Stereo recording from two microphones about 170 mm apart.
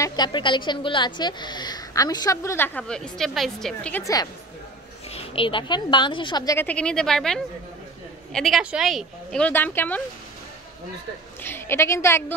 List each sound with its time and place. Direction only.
0.0 s a woman's voice: 25° left (ahead or behind)
2.8 s speech: centre (ahead or behind)
4.0 s a woman's voice: 20° left (ahead or behind)
5.1 s a woman's voice: 30° left (ahead or behind); by 10.0 s 10° left (ahead or behind)
11.4 s a woman's voice: 15° left (ahead or behind)